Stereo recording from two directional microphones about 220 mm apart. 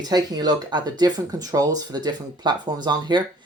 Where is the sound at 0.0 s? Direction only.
20° right (ahead or behind).